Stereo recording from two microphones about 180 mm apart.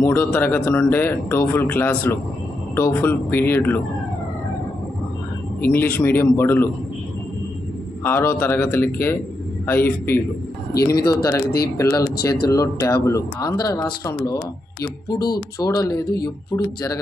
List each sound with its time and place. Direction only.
0.0 s speech: 10° left (ahead or behind)
5.6 s speech: 10° left (ahead or behind)
8.0 s speech: 15° left (ahead or behind)